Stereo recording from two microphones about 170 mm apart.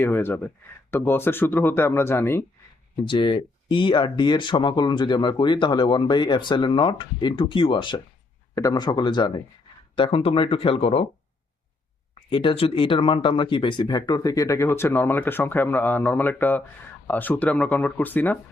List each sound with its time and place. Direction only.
0.0 s speech: 15° left (ahead or behind)
3.0 s speech: 30° left (ahead or behind)
12.3 s speech: 30° left (ahead or behind); by 18.3 s 10° left (ahead or behind)